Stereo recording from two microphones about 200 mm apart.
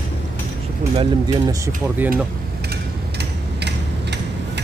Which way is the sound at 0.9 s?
20° right (ahead or behind).